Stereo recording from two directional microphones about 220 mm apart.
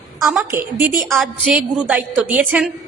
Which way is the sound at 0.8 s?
40° right (ahead or behind).